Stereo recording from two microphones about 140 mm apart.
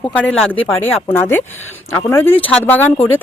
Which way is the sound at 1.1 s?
15° left (ahead or behind).